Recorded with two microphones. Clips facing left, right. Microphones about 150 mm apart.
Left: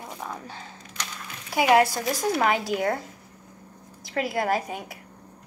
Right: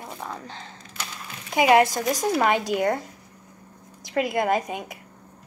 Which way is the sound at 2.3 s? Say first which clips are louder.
Right 2 dB; centre (ahead or behind).